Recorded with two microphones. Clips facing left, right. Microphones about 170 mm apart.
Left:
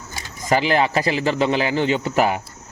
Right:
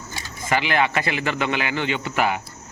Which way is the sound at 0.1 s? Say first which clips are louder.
Left 4 dB; 40° left (ahead or behind).